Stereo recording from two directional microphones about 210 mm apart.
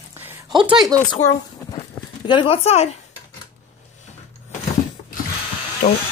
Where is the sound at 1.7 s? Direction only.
20° left (ahead or behind).